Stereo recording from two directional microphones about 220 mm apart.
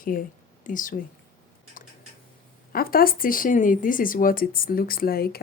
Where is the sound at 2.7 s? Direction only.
45° left (ahead or behind).